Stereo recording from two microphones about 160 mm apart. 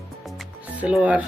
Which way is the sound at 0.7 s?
10° right (ahead or behind).